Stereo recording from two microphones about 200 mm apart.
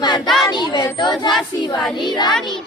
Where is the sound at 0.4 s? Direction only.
20° left (ahead or behind).